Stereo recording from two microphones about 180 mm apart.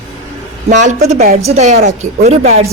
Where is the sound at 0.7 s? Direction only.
40° right (ahead or behind).